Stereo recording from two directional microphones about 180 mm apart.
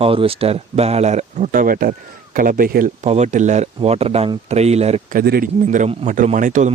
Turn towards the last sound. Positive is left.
turn(degrees=-45)  # may be behind; listen again after turning